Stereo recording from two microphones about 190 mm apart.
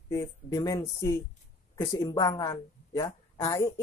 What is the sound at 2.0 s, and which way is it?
A woman's voice, 20° left (ahead or behind).